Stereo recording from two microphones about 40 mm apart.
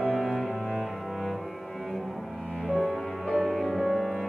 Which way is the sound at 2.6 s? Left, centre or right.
Centre.